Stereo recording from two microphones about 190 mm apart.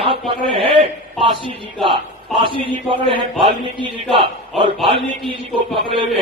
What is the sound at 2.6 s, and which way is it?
A man's voice, 30° right (ahead or behind).